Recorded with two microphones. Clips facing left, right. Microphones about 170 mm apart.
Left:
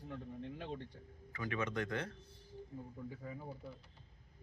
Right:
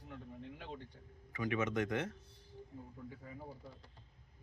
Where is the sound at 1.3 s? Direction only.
20° right (ahead or behind).